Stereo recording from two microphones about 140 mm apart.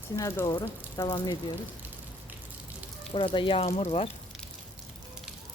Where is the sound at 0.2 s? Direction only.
20° left (ahead or behind).